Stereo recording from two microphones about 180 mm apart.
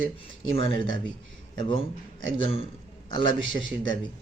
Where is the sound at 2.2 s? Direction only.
90° right.